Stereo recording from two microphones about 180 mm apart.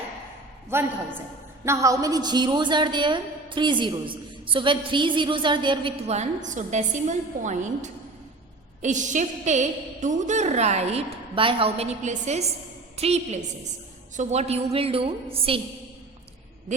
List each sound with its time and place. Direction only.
0.7 s a woman's voice: 10° right (ahead or behind); by 15.6 s 30° right (ahead or behind)